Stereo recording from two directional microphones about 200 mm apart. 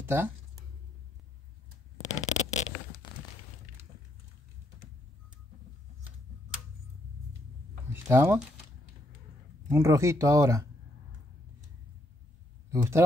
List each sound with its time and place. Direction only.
0.0 s speech: 10° right (ahead or behind)
2.0 s zipper: 35° left (ahead or behind)
7.9 s a sound: 10° right (ahead or behind)
9.7 s speech: 15° right (ahead or behind)
12.7 s speech: 15° right (ahead or behind)